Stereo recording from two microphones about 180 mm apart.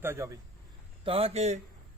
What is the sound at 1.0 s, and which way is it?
Speech, 30° right (ahead or behind).